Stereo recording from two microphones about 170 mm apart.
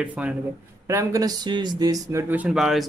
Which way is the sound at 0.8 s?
20° right (ahead or behind).